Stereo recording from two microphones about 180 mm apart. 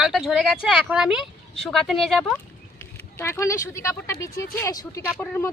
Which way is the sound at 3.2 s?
15° left (ahead or behind).